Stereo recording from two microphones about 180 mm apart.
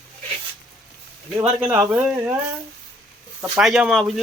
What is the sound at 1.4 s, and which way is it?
Speech, 10° right (ahead or behind).